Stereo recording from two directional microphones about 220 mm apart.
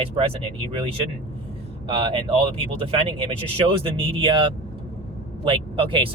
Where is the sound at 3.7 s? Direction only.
25° right (ahead or behind).